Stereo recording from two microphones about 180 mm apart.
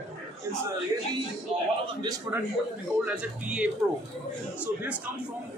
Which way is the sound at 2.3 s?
10° right (ahead or behind).